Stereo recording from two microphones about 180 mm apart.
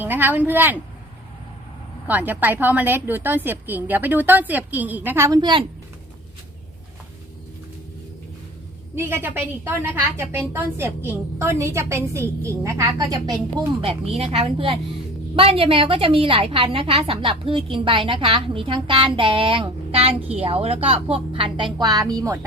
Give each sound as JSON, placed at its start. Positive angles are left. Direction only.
{"t": 0.0, "sound": "speech", "side_deg": -10}
{"t": 2.0, "sound": "a woman's voice", "side_deg": -10}
{"t": 9.0, "sound": "a woman's voice", "side_deg": -10}
{"t": 13.8, "sound": "a woman's voice", "side_deg": -35}